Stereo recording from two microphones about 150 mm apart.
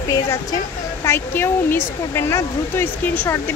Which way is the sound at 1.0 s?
15° left (ahead or behind).